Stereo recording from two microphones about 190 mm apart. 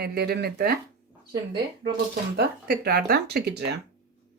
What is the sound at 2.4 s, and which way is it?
Speech, 55° right (ahead or behind).